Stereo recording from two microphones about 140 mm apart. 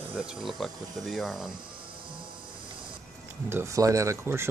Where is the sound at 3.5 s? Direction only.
20° right (ahead or behind).